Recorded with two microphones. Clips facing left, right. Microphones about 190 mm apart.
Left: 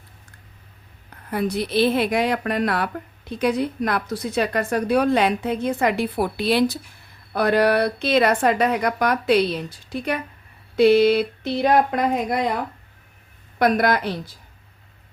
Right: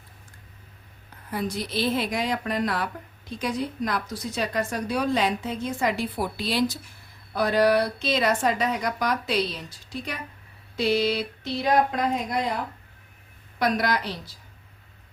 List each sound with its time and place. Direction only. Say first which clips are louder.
1.3 s a woman's voice: left 6 dB; 60° left (ahead or behind)
13.6 s a woman's voice: left 6 dB; 55° left (ahead or behind)